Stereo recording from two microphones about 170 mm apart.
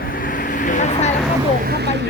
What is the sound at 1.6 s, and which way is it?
Speech, 75° right (ahead or behind).